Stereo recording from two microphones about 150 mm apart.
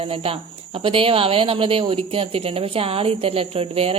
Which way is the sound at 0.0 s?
40° right (ahead or behind).